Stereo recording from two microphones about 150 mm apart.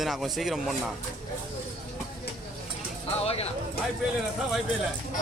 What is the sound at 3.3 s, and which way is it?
Speech, 45° left (ahead or behind).